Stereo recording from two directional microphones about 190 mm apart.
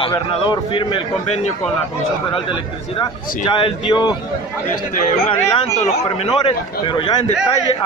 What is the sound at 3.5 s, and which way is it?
Speech, 25° left (ahead or behind).